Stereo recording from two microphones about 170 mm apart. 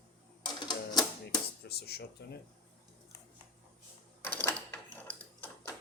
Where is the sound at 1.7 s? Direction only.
70° left (ahead or behind).